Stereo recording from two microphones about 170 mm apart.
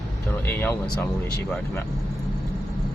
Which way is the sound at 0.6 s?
15° left (ahead or behind).